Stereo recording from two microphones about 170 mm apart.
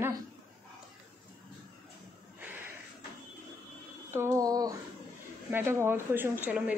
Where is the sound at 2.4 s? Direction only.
10° right (ahead or behind).